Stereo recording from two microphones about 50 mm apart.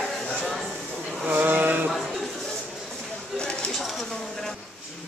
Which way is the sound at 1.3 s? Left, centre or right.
Right.